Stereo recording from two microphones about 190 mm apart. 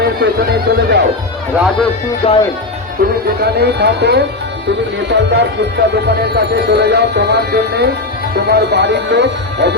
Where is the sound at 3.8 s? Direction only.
60° right (ahead or behind).